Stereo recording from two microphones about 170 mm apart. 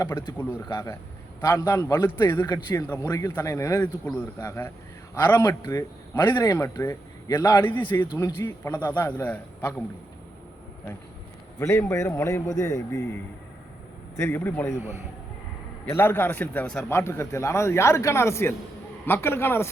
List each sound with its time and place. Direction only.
0.0 s a man's voice: 15° left (ahead or behind)
8.0 s a man's voice: 25° left (ahead or behind)
11.6 s a man's voice: 15° left (ahead or behind)
14.2 s a man's voice: 10° left (ahead or behind)
15.9 s a man's voice: 15° left (ahead or behind)